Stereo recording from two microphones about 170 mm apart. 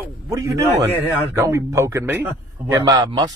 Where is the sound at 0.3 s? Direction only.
20° right (ahead or behind).